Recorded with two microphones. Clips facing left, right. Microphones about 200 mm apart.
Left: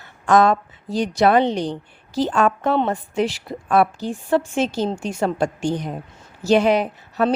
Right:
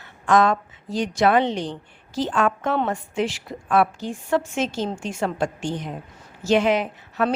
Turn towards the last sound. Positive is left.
turn(degrees=35)  # may be behind; listen again after turning